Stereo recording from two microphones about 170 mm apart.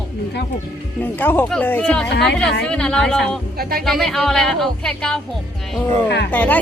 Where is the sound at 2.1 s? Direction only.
90° left.